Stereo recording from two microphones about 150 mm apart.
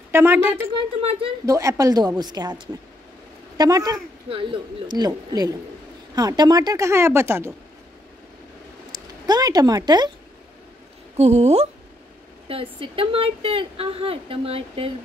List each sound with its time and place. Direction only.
0.1 s speech: 15° right (ahead or behind)
4.3 s speech: 35° right (ahead or behind); by 7.5 s 15° right (ahead or behind)
8.9 s speech: 25° right (ahead or behind)
11.1 s a woman's voice: 45° right (ahead or behind)